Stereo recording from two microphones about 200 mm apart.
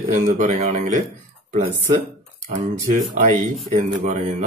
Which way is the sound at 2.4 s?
40° right (ahead or behind).